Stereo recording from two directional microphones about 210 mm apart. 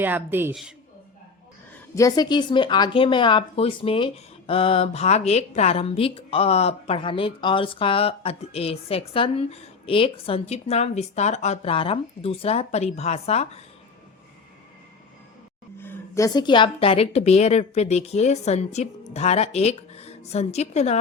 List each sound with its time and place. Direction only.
0.0 s a woman's voice: 10° right (ahead or behind)
1.7 s a woman's voice: 15° left (ahead or behind)
15.8 s a woman's voice: 10° left (ahead or behind); by 21.0 s 30° left (ahead or behind)